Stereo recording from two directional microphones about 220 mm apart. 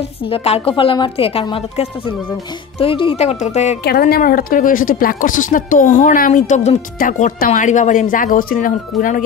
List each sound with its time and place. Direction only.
0.2 s a woman's voice: 25° left (ahead or behind)
3.8 s speech: 45° left (ahead or behind)